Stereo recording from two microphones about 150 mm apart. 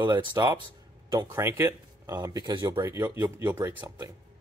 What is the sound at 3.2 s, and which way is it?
Speech, 15° right (ahead or behind).